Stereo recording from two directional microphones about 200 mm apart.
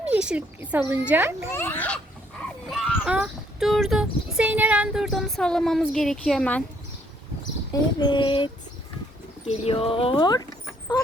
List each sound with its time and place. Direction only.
0.0 s speech: 5° right (ahead or behind)
1.5 s a sound: 10° left (ahead or behind)
2.6 s speech: centre (ahead or behind)
7.7 s speech: 20° left (ahead or behind)
9.5 s speech: 30° left (ahead or behind)